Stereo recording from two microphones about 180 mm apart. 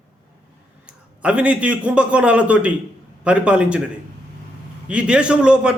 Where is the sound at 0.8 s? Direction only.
5° right (ahead or behind).